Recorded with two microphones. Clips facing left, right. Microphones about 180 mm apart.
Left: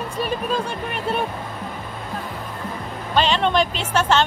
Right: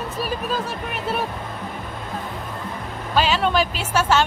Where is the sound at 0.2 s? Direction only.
5° right (ahead or behind).